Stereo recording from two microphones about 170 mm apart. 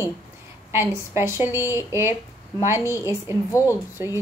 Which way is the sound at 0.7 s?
15° right (ahead or behind).